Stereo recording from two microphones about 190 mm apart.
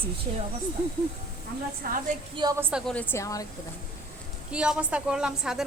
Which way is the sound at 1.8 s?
50° right (ahead or behind).